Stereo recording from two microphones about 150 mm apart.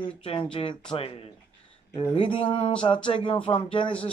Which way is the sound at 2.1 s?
35° left (ahead or behind).